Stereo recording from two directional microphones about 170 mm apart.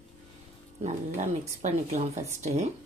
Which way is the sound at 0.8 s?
45° right (ahead or behind).